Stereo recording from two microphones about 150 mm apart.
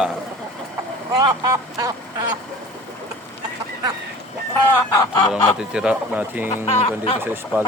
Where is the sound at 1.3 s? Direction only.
25° right (ahead or behind).